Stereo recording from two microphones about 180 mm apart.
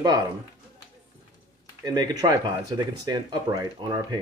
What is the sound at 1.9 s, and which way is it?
Speech, 25° right (ahead or behind).